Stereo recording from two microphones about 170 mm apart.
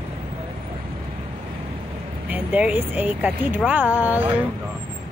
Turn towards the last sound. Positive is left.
turn(degrees=-10)  # may be behind; listen again after turning